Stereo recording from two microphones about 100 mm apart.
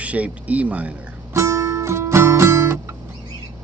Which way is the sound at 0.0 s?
15° right (ahead or behind).